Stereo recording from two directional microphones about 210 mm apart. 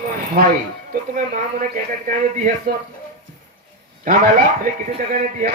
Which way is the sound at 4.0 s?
40° right (ahead or behind).